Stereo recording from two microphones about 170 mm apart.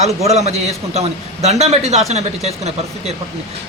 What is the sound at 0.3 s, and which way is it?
A man's voice, 40° right (ahead or behind).